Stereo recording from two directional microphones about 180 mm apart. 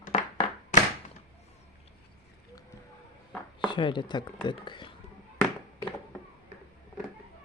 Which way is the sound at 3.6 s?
25° left (ahead or behind).